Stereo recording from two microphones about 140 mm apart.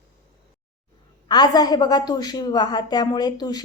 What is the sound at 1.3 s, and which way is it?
A woman's voice, 30° left (ahead or behind).